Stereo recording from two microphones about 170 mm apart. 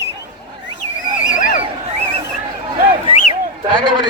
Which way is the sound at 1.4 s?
50° left (ahead or behind).